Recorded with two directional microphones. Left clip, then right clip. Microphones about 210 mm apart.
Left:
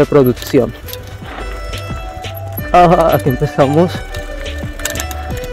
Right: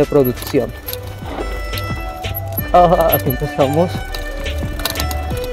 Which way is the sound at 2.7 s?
60° left (ahead or behind).